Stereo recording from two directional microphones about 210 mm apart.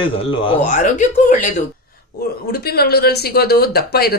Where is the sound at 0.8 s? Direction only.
40° left (ahead or behind).